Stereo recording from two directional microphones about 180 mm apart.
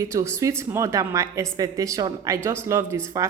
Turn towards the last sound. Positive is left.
turn(degrees=-15)  # may be behind; listen again after turning